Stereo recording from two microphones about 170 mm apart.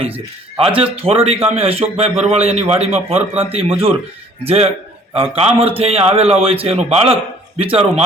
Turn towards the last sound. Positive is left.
turn(degrees=-35)  # may be behind; listen again after turning